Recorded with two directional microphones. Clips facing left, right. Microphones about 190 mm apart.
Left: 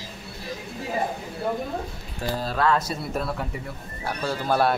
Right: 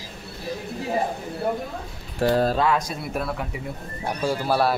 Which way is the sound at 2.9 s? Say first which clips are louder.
Even; centre (ahead or behind).